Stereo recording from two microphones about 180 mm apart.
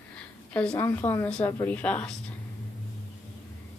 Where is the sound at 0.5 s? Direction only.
10° left (ahead or behind).